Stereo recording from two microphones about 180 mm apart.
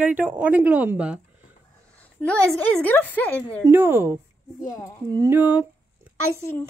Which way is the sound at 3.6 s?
15° right (ahead or behind).